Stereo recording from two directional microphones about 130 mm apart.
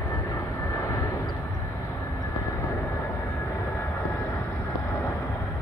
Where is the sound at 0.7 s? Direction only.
25° left (ahead or behind).